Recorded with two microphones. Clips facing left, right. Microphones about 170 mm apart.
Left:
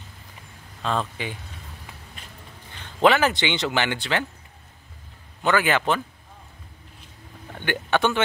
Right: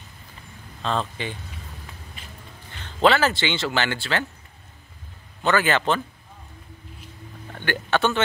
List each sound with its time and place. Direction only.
0.8 s speech: 10° left (ahead or behind)
2.8 s speech: 15° left (ahead or behind)
5.4 s speech: 10° left (ahead or behind)
7.5 s speech: 15° left (ahead or behind)